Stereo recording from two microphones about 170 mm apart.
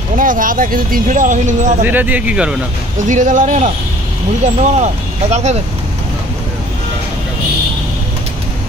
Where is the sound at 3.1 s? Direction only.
50° right (ahead or behind).